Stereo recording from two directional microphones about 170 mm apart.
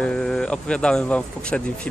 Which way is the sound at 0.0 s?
5° left (ahead or behind).